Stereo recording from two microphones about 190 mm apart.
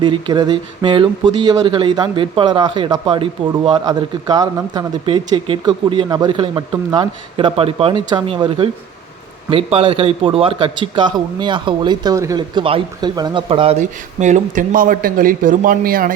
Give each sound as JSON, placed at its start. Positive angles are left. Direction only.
{"t": 0.0, "sound": "a man's voice", "side_deg": -25}